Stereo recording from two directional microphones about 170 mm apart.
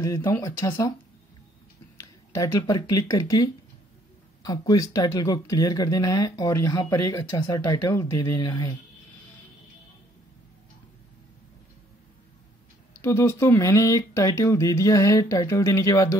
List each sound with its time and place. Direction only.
0.0 s speech: 15° left (ahead or behind)
2.3 s speech: 20° left (ahead or behind)
13.0 s speech: 15° left (ahead or behind)